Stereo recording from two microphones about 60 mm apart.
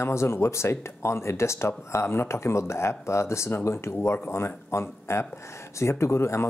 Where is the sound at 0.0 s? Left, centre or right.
Left.